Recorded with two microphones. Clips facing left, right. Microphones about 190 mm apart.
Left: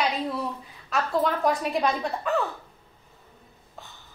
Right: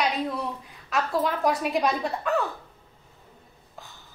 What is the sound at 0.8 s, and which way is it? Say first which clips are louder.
A woman's voice: left 1 dB; centre (ahead or behind).